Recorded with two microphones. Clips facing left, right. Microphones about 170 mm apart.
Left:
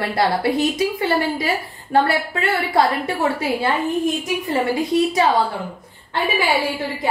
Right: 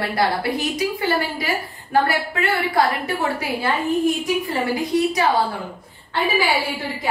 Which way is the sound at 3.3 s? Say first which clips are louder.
Left 2 dB; 25° left (ahead or behind).